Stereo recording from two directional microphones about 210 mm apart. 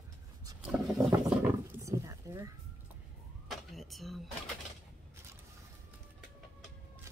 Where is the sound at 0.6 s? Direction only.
Centre (ahead or behind).